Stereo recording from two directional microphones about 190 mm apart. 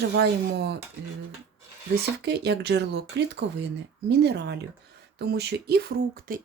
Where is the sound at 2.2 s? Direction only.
60° right (ahead or behind).